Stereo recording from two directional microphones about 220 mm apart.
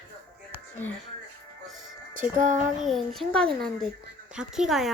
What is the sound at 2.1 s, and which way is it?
Music, 35° right (ahead or behind).